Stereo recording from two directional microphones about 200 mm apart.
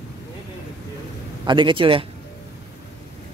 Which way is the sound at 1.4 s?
25° right (ahead or behind).